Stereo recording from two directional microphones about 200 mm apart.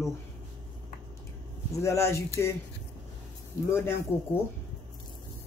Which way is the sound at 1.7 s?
15° left (ahead or behind).